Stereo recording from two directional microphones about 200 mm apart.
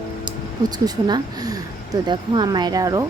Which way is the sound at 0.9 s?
20° right (ahead or behind).